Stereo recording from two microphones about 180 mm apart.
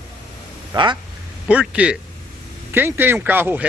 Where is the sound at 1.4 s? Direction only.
5° right (ahead or behind).